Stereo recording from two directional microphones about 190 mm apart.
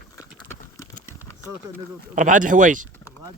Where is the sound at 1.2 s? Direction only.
15° left (ahead or behind).